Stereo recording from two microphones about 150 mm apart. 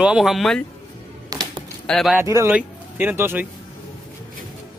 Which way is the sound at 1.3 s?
25° right (ahead or behind).